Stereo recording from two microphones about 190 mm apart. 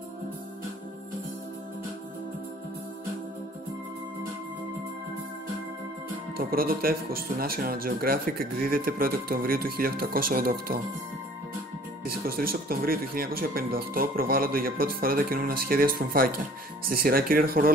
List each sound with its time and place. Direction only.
6.3 s speech: 50° right (ahead or behind)
12.0 s speech: 50° right (ahead or behind)